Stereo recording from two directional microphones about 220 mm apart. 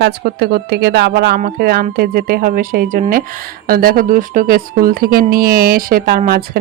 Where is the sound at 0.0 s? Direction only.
45° right (ahead or behind).